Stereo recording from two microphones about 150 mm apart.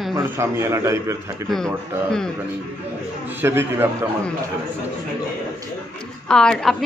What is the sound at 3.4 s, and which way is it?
Speech, 15° right (ahead or behind).